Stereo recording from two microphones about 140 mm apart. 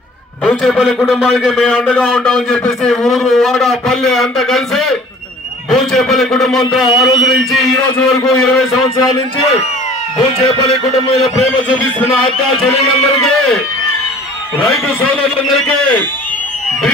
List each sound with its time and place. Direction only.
0.5 s a man's voice: 5° left (ahead or behind)
10.2 s a man's voice: 45° left (ahead or behind)
11.7 s speech: 10° left (ahead or behind)
14.6 s a man's voice: 5° left (ahead or behind)